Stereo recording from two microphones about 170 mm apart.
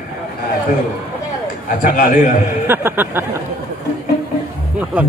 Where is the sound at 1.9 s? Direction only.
50° left (ahead or behind).